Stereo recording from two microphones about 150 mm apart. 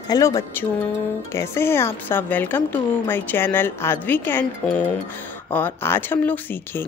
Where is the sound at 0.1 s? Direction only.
25° left (ahead or behind).